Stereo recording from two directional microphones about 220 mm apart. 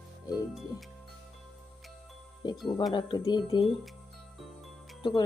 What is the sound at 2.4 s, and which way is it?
Speech, 20° left (ahead or behind).